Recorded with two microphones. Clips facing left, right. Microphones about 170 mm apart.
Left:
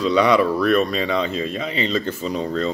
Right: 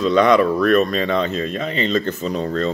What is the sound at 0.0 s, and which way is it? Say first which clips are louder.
Speech: right 2 dB; 10° left (ahead or behind).